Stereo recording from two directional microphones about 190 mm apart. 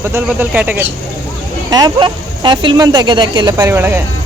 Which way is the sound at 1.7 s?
20° right (ahead or behind).